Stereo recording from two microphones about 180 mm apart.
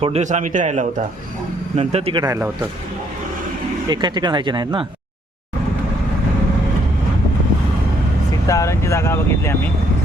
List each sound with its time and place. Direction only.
0.0 s a man's voice: 40° right (ahead or behind)
2.2 s speech: 15° right (ahead or behind)
3.8 s speech: 25° right (ahead or behind)
8.4 s speech: 15° left (ahead or behind)